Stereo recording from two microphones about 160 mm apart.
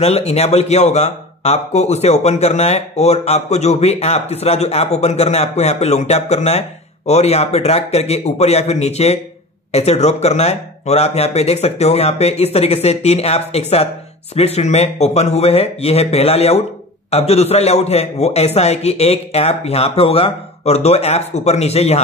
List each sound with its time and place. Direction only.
0.0 s a man's voice: 40° left (ahead or behind)